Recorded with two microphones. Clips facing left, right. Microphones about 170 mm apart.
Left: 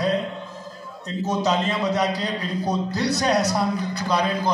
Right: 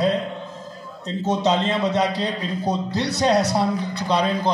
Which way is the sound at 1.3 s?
25° right (ahead or behind).